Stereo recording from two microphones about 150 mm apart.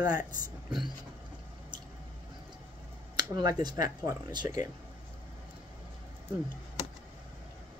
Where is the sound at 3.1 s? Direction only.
25° right (ahead or behind).